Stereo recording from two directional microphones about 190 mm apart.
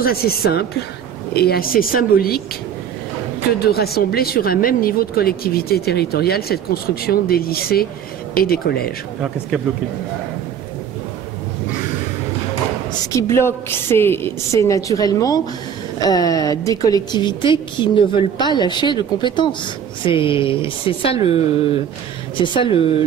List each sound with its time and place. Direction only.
0.0 s speech: 55° left (ahead or behind)
3.5 s speech: 55° left (ahead or behind)
13.1 s a woman's voice: 15° left (ahead or behind); by 21.4 s 30° left (ahead or behind)
22.4 s a woman's voice: 25° left (ahead or behind)